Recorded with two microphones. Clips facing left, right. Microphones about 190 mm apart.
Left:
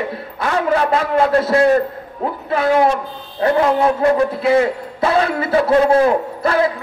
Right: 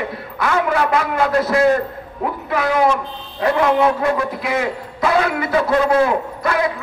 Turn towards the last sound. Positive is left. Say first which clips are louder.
# left 3 dB
turn(degrees=30)  # may be behind; listen again after turning